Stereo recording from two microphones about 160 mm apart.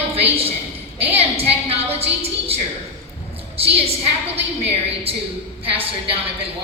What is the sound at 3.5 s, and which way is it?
A woman's voice, 40° right (ahead or behind).